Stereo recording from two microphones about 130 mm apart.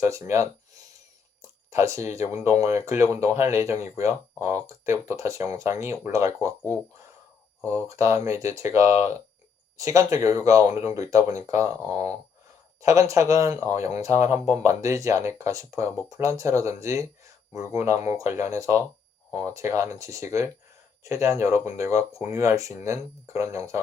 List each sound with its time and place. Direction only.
0.0 s speech: 20° right (ahead or behind)